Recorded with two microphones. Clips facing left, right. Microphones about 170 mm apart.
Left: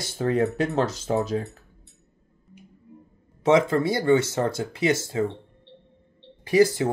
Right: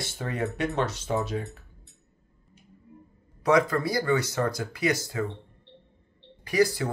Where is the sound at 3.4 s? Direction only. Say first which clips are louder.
Left 3 dB; 25° left (ahead or behind).